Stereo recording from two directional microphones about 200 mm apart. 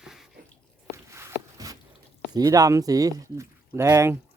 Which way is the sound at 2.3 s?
20° right (ahead or behind).